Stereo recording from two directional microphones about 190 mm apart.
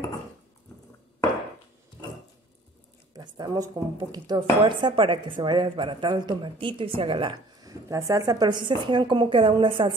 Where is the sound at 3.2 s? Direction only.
20° right (ahead or behind).